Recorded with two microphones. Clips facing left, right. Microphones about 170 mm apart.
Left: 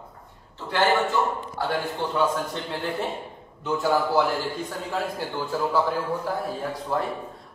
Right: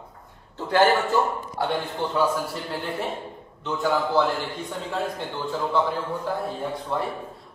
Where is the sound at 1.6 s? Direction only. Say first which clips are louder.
Even; 5° left (ahead or behind).